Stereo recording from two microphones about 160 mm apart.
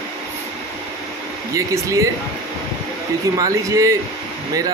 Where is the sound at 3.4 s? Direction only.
20° right (ahead or behind).